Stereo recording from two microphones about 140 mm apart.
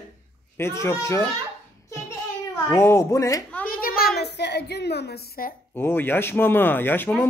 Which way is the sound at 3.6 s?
90° left.